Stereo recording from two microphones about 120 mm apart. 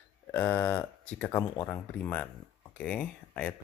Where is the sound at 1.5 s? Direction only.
20° left (ahead or behind).